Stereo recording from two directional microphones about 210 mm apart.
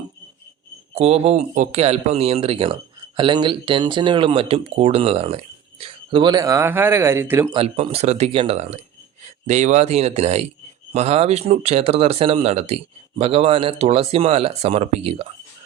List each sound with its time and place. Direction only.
0.9 s speech: 30° right (ahead or behind); by 7.5 s 10° right (ahead or behind)
7.5 s speech: 25° right (ahead or behind)